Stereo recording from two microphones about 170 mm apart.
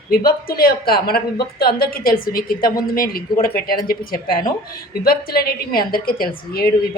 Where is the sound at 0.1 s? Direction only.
60° left (ahead or behind).